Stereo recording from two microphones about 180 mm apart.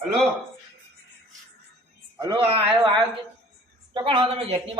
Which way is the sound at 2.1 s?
25° right (ahead or behind).